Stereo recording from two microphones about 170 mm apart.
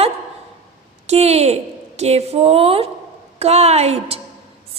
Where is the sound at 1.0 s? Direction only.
40° right (ahead or behind).